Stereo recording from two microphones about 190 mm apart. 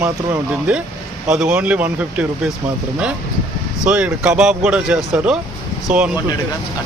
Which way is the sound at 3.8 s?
5° right (ahead or behind).